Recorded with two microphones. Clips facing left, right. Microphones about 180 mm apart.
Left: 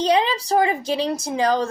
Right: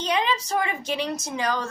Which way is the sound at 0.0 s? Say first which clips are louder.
Left 6 dB; 35° left (ahead or behind).